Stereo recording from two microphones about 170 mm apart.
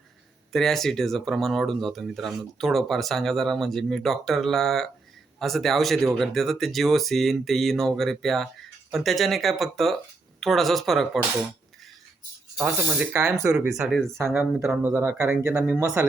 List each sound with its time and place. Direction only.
0.5 s speech: centre (ahead or behind)
12.5 s speech: 10° right (ahead or behind)